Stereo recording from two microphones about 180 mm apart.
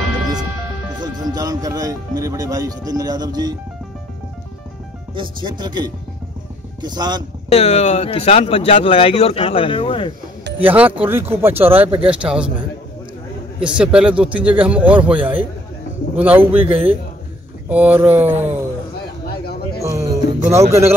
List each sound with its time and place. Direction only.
0.9 s speech: 25° right (ahead or behind)
5.1 s speech: 25° right (ahead or behind)
7.5 s speech: 35° left (ahead or behind)
10.6 s speech: 10° right (ahead or behind)
13.6 s speech: 5° right (ahead or behind)
17.6 s speech: 10° right (ahead or behind)
19.8 s music: 15° right (ahead or behind)